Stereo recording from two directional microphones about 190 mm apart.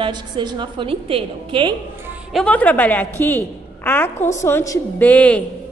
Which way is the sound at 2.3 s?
5° left (ahead or behind).